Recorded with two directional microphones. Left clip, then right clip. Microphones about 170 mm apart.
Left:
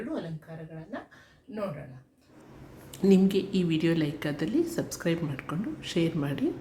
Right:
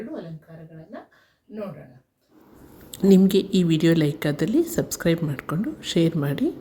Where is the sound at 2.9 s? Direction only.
30° right (ahead or behind).